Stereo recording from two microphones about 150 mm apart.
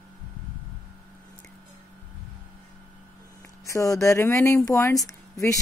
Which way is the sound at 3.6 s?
20° left (ahead or behind).